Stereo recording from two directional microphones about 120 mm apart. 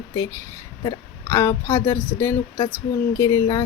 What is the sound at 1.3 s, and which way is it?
Speech, 20° left (ahead or behind).